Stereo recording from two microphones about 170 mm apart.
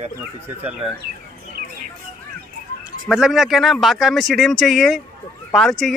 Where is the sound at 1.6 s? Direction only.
60° right (ahead or behind).